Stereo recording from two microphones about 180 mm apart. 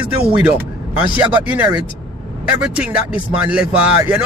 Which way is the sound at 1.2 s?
10° right (ahead or behind).